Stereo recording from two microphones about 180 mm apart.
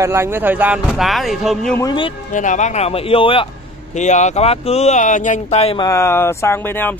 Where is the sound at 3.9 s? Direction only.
40° left (ahead or behind).